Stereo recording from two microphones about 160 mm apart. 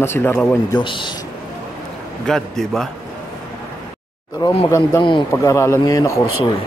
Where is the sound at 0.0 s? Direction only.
15° left (ahead or behind).